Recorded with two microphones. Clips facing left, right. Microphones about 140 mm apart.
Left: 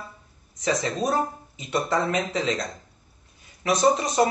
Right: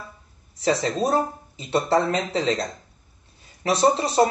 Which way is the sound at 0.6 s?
30° right (ahead or behind).